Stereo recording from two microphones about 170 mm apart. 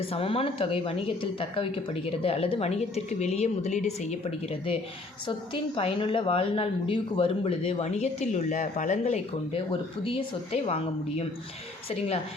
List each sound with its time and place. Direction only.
0.0 s a woman's voice: 35° left (ahead or behind)
5.7 s a woman's voice: 30° left (ahead or behind)